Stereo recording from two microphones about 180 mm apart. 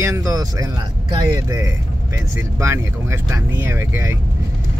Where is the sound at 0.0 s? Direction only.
20° right (ahead or behind).